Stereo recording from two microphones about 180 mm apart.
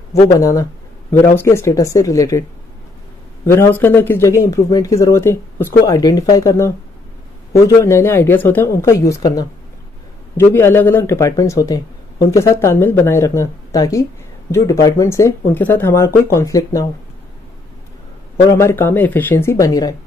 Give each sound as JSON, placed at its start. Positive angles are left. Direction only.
{"t": 0.4, "sound": "speech", "side_deg": 20}
{"t": 3.4, "sound": "speech", "side_deg": 15}
{"t": 18.5, "sound": "speech", "side_deg": 15}